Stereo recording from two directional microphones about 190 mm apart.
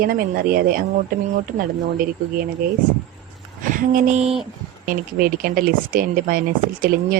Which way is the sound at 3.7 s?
45° right (ahead or behind).